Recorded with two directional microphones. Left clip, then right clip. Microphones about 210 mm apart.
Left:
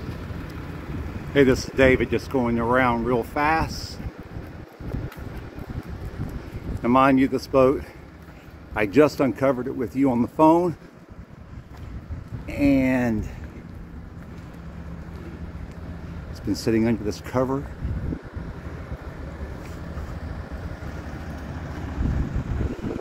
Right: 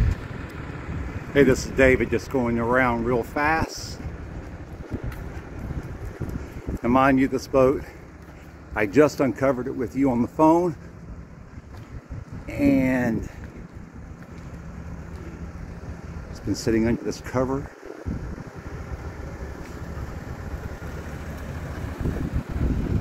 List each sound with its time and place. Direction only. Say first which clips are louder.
0.2 s vehicle: even; 50° left (ahead or behind)
1.3 s speech: even; centre (ahead or behind)
6.8 s speech: left 1 dB; 10° left (ahead or behind)
8.7 s speech: even; 5° left (ahead or behind)
12.4 s speech: left 1 dB; 5° left (ahead or behind)
16.4 s speech: even; 10° left (ahead or behind)
21.1 s boat: even; 60° right (ahead or behind)